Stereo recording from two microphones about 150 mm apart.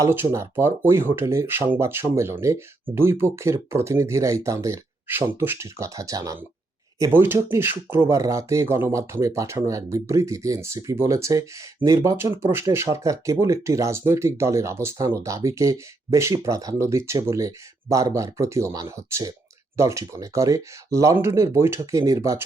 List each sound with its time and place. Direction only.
0.0 s speech: 15° right (ahead or behind)